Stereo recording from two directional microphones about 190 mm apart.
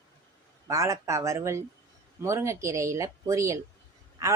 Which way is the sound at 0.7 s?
15° right (ahead or behind).